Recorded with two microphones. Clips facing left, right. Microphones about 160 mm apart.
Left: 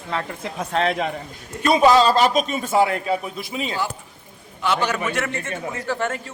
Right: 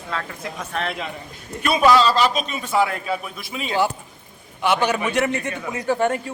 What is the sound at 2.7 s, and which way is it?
A man's voice, 25° left (ahead or behind).